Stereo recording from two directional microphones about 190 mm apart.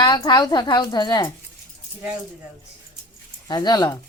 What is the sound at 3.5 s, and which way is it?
Speech, 20° left (ahead or behind).